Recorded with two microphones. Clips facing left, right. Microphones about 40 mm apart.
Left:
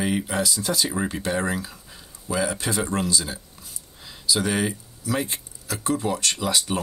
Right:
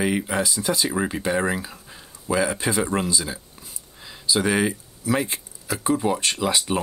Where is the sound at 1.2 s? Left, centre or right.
Right.